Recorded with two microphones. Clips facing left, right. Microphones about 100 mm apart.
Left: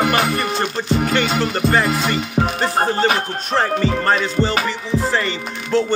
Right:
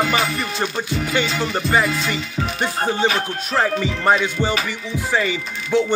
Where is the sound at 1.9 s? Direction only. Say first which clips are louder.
Left 5 dB; 50° left (ahead or behind).